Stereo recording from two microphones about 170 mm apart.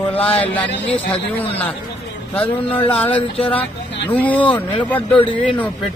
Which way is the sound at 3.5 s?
10° left (ahead or behind).